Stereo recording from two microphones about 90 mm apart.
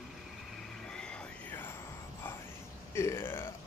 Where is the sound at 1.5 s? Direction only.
25° left (ahead or behind).